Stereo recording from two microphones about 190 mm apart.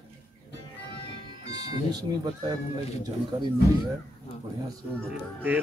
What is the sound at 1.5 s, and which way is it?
Speech, 20° right (ahead or behind).